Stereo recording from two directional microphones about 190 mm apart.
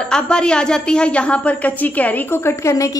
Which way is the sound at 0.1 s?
5° left (ahead or behind).